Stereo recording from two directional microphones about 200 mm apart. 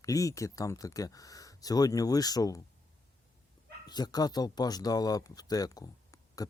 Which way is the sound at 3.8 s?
20° left (ahead or behind).